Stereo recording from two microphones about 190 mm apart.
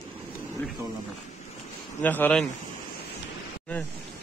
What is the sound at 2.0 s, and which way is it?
Speech, 10° left (ahead or behind).